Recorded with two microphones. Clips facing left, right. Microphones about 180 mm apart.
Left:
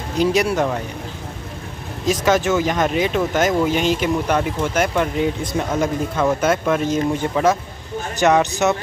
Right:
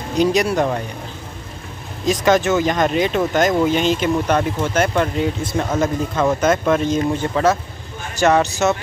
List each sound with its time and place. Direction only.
0.2 s speech: 5° left (ahead or behind)
2.0 s speech: 5° left (ahead or behind)